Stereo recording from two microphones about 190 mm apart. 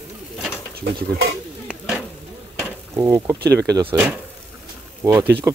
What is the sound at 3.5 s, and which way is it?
Speech, 20° right (ahead or behind).